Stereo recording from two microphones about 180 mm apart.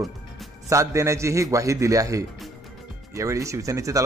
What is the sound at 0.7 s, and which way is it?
A man's voice, 15° right (ahead or behind).